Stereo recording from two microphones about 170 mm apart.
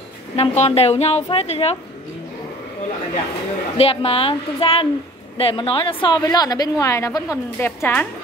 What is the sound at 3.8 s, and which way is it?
A woman's voice, 35° left (ahead or behind).